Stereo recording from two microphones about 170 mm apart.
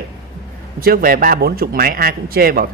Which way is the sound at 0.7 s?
60° right (ahead or behind).